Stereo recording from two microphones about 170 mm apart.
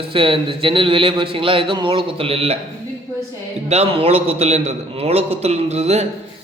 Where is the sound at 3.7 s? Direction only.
35° right (ahead or behind).